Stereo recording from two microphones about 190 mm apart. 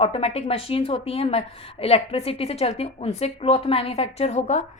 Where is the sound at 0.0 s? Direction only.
30° left (ahead or behind).